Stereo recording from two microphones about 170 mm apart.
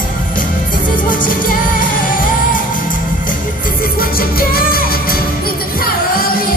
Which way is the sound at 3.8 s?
60° left (ahead or behind).